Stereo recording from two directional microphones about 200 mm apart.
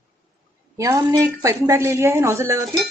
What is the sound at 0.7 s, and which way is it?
A woman's voice, 15° right (ahead or behind).